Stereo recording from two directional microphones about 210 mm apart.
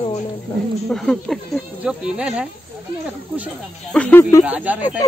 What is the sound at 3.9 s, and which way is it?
Speech, 5° left (ahead or behind).